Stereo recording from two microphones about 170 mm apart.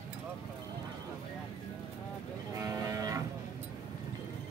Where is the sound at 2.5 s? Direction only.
20° right (ahead or behind).